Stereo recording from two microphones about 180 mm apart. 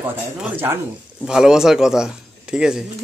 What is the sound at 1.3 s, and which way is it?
Speech, 5° right (ahead or behind).